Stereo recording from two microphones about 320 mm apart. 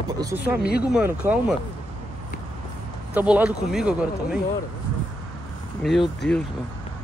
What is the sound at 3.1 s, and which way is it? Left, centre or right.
Speech, centre.